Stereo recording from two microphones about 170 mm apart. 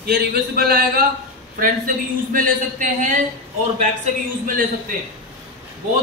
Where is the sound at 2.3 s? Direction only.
50° right (ahead or behind).